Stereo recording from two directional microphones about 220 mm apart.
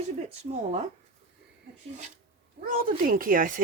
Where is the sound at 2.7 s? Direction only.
40° right (ahead or behind).